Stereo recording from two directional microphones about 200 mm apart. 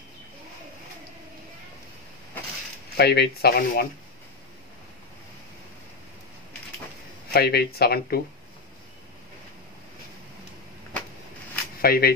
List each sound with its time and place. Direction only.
3.0 s speech: 55° left (ahead or behind)
7.3 s speech: 55° left (ahead or behind)
11.8 s speech: 50° left (ahead or behind)